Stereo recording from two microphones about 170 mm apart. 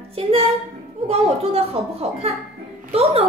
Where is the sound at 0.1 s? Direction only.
35° right (ahead or behind).